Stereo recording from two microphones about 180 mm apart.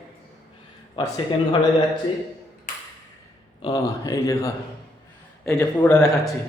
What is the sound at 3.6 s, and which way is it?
A man's voice, 20° left (ahead or behind).